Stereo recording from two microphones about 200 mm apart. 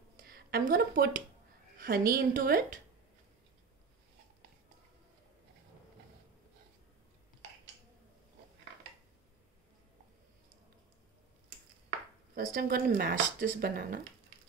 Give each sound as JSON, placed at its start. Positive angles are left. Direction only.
{"t": 0.2, "sound": "a woman's voice", "side_deg": -50}
{"t": 12.4, "sound": "speech", "side_deg": -45}